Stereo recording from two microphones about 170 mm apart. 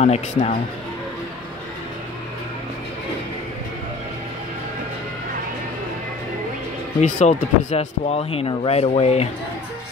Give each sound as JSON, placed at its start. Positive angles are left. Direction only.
{"t": 0.0, "sound": "speech", "side_deg": 45}
{"t": 7.0, "sound": "speech", "side_deg": 45}